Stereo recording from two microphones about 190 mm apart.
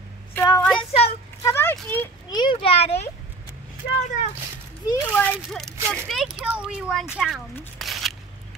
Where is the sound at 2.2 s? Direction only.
25° left (ahead or behind).